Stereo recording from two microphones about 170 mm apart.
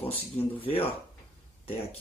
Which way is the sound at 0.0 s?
10° left (ahead or behind).